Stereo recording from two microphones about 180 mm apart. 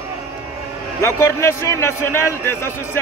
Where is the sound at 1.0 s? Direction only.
15° left (ahead or behind).